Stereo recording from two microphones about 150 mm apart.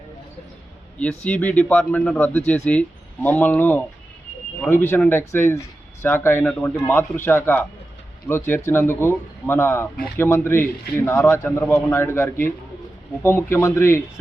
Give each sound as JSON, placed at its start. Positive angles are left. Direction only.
{"t": 0.9, "sound": "speech", "side_deg": 10}